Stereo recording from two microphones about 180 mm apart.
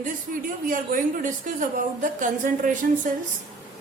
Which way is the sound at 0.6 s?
50° right (ahead or behind).